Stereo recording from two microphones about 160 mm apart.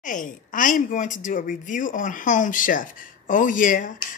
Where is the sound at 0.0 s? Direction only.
55° left (ahead or behind).